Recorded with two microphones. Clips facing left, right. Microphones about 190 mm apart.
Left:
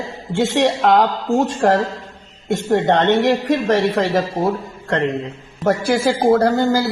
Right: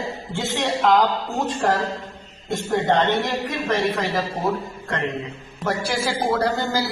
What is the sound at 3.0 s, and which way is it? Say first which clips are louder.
Speech: left 8 dB; 75° left (ahead or behind).